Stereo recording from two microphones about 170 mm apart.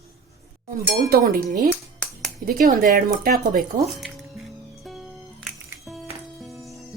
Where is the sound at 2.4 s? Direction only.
60° right (ahead or behind).